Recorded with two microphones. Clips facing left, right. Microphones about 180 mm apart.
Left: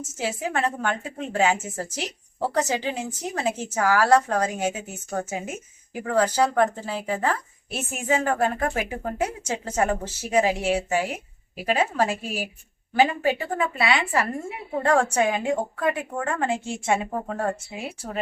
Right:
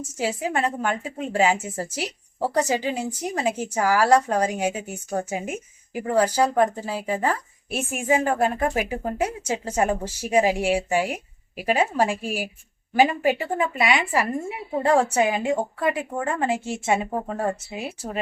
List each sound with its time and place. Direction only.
0.0 s a woman's voice: 10° right (ahead or behind)